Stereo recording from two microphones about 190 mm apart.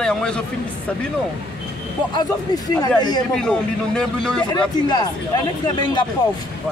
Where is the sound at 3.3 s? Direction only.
5° left (ahead or behind).